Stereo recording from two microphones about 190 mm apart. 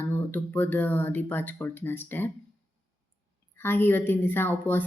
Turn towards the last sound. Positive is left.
turn(degrees=10)  # may be behind; listen again after turning